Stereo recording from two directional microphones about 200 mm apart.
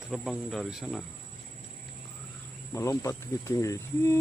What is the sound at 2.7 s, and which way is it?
Speech, 15° left (ahead or behind).